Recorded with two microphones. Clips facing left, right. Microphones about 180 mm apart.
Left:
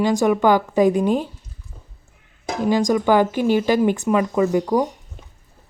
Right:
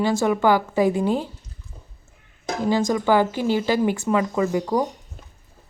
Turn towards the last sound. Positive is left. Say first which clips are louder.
# left 3 dB
turn(degrees=15)  # may be behind; listen again after turning